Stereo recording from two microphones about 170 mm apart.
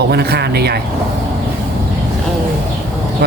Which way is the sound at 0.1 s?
75° right (ahead or behind).